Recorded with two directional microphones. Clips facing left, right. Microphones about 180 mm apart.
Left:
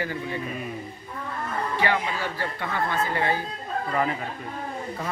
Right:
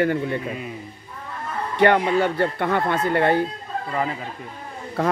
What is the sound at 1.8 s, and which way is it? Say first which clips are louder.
Speech: right 11 dB; 60° right (ahead or behind).